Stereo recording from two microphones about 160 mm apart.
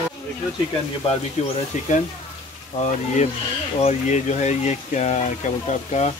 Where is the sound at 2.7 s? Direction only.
45° left (ahead or behind).